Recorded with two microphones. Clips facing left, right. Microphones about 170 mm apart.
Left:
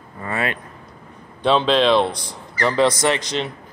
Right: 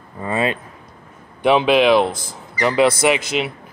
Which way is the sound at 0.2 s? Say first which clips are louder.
Right 4 dB; 20° right (ahead or behind).